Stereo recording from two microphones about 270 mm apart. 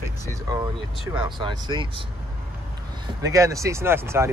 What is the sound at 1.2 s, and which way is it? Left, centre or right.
Speech, centre.